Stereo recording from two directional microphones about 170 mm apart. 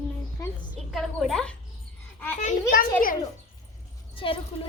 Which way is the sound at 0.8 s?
Centre (ahead or behind).